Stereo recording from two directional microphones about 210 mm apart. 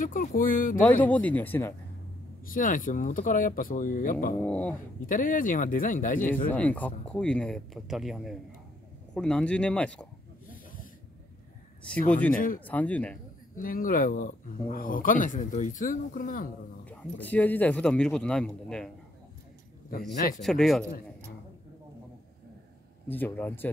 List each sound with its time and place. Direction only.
0.0 s speech: 40° left (ahead or behind)
0.7 s speech: 10° left (ahead or behind)
2.4 s speech: 40° left (ahead or behind)
4.4 s speech: 5° left (ahead or behind)
5.0 s speech: 40° left (ahead or behind)
6.5 s speech: 5° left (ahead or behind)
12.1 s speech: 5° left (ahead or behind)
13.6 s speech: 40° left (ahead or behind)
16.8 s speech: 5° left (ahead or behind)
20.4 s speech: centre (ahead or behind)
23.0 s speech: 10° left (ahead or behind)